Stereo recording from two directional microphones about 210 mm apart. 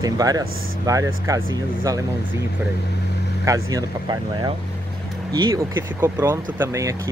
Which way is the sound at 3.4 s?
15° right (ahead or behind).